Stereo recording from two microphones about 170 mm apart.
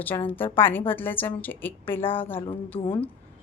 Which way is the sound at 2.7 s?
35° left (ahead or behind).